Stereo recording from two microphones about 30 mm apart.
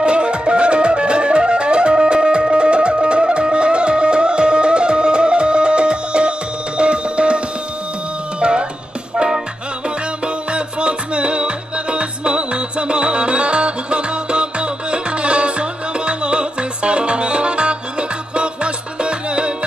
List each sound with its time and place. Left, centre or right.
0.0 s music: right
9.1 s music: right
10.2 s music: right